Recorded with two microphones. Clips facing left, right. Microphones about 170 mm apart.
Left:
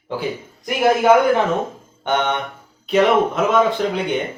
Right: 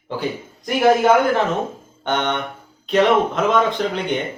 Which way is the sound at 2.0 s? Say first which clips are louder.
Left 1 dB; 10° left (ahead or behind).